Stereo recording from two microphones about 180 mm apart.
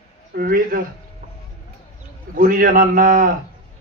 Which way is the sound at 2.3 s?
50° right (ahead or behind).